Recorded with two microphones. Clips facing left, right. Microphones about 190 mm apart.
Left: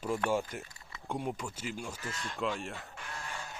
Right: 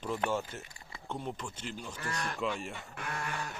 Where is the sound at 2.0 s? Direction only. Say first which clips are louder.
Right 4 dB; 65° right (ahead or behind).